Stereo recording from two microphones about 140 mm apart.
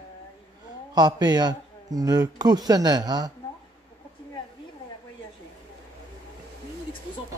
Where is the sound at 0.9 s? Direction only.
30° right (ahead or behind).